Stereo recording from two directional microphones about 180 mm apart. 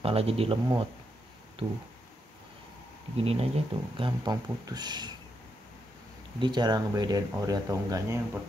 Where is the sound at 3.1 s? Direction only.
35° right (ahead or behind).